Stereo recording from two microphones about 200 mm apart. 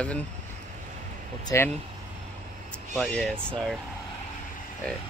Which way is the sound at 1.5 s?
15° left (ahead or behind).